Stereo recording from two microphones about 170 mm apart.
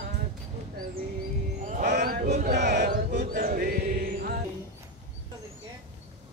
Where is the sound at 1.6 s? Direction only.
45° right (ahead or behind).